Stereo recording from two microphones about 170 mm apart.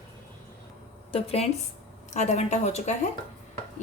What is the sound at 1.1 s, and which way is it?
A woman's voice, 35° left (ahead or behind).